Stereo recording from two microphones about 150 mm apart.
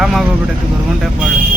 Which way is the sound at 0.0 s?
Centre (ahead or behind).